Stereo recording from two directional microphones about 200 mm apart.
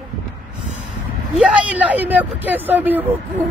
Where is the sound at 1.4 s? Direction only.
5° right (ahead or behind).